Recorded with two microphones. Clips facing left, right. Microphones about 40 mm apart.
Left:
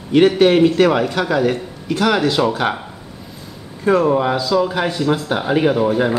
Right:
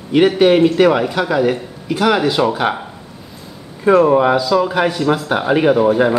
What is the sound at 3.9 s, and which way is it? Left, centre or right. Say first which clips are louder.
Speech: right 4 dB; centre.